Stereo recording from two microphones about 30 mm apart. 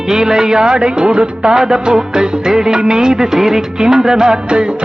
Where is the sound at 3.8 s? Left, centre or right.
Centre.